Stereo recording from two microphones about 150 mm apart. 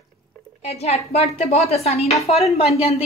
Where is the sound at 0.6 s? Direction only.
45° left (ahead or behind).